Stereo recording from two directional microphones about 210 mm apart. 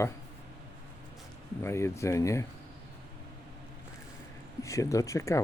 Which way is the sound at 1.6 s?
15° left (ahead or behind).